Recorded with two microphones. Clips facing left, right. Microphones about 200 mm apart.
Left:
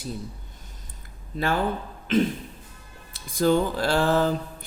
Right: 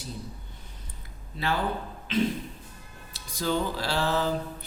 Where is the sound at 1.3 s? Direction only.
50° left (ahead or behind).